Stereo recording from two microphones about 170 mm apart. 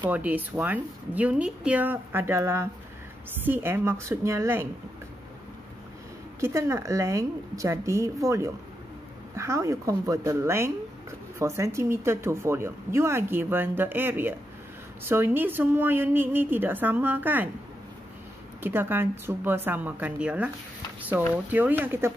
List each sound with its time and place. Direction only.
0.1 s speech: 10° right (ahead or behind)
6.4 s speech: 15° right (ahead or behind)
18.6 s speech: 10° right (ahead or behind)